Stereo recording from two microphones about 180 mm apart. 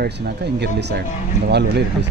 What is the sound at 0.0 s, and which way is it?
Speech, 65° right (ahead or behind).